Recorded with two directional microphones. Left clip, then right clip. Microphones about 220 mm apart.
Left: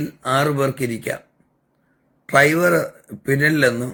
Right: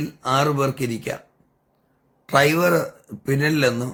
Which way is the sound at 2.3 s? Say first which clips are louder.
Left 2 dB; 15° right (ahead or behind).